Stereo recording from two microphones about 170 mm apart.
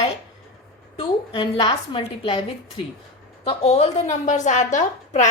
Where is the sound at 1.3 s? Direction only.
30° left (ahead or behind); by 5.3 s 45° left (ahead or behind).